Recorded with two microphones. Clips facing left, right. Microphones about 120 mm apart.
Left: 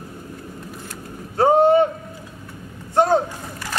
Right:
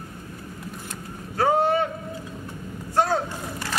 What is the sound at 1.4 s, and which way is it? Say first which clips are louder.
Boat: left 7 dB; 25° left (ahead or behind).